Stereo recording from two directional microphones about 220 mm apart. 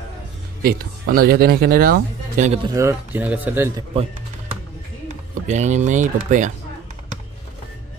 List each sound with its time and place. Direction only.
0.6 s speech: 45° right (ahead or behind)
2.6 s a man's voice: 15° right (ahead or behind)
5.0 s speech: 30° right (ahead or behind)